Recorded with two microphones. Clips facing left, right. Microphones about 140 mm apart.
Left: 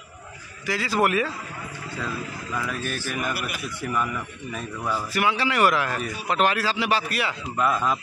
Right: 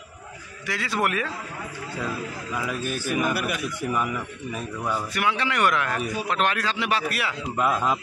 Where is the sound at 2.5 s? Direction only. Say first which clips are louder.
Right 1 dB; 10° right (ahead or behind).